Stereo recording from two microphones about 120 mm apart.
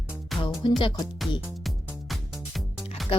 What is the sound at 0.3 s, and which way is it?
Music, 40° left (ahead or behind).